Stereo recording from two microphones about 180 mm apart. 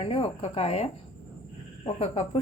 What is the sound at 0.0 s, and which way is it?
A woman's voice, 30° left (ahead or behind).